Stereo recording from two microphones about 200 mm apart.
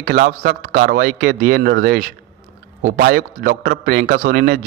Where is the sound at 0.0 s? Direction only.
55° right (ahead or behind).